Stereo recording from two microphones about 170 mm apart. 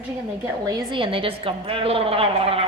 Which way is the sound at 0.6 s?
30° right (ahead or behind).